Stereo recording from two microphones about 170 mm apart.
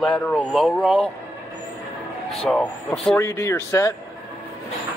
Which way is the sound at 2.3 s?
5° left (ahead or behind).